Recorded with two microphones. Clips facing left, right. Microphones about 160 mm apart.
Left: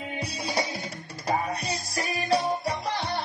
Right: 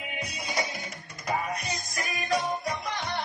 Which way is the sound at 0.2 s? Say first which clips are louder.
Left 3 dB; 30° left (ahead or behind).